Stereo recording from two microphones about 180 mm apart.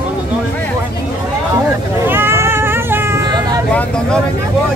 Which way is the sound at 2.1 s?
15° right (ahead or behind).